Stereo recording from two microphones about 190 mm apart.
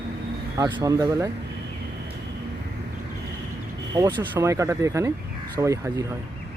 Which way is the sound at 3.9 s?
20° right (ahead or behind).